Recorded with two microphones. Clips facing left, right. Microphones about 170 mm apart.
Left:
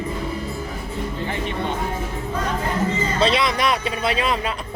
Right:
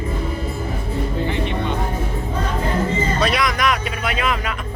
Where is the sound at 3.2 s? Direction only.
25° left (ahead or behind).